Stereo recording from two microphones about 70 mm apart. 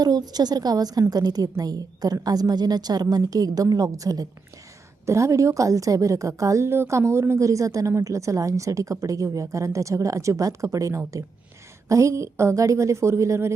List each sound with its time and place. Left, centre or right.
0.0 s a woman's voice: right
5.0 s a woman's voice: right